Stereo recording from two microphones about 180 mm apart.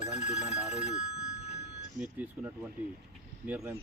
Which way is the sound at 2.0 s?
10° right (ahead or behind).